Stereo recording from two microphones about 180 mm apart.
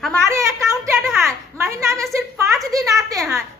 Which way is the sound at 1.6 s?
15° right (ahead or behind).